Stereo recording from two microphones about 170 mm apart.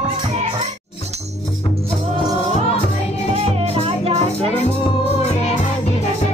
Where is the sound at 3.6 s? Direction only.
35° right (ahead or behind).